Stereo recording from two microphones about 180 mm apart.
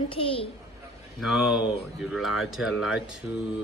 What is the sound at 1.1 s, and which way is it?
Speech, centre (ahead or behind).